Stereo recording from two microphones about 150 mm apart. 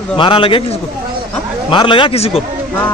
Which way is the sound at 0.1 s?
35° left (ahead or behind).